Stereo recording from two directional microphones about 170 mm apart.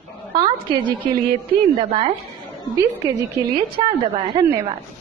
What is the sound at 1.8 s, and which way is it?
Speech, 35° right (ahead or behind).